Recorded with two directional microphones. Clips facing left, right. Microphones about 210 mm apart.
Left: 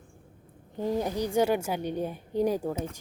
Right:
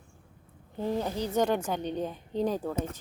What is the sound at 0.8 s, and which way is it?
Speech, 15° left (ahead or behind).